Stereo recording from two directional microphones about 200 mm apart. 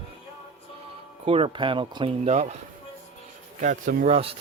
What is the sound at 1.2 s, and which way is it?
Speech, 30° right (ahead or behind).